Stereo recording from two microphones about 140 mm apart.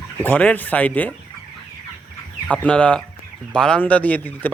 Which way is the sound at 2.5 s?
5° left (ahead or behind).